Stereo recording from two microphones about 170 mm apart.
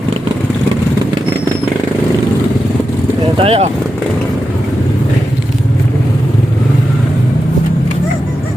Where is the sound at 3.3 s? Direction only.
35° right (ahead or behind).